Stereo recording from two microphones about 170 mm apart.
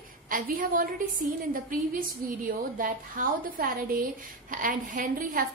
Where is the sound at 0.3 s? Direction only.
55° right (ahead or behind).